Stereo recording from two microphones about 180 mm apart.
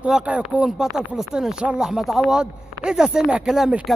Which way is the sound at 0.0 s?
5° right (ahead or behind).